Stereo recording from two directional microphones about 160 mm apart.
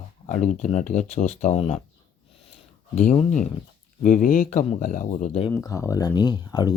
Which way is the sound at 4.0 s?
55° left (ahead or behind).